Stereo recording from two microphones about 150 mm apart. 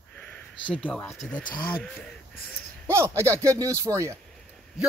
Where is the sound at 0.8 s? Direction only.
15° left (ahead or behind).